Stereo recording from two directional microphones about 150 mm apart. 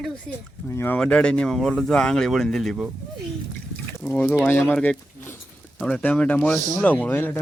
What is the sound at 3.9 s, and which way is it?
Speech, 10° left (ahead or behind).